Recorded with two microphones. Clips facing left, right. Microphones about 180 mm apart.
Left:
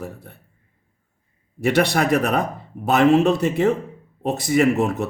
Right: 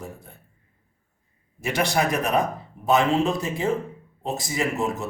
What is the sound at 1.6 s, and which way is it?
Speech, 65° left (ahead or behind).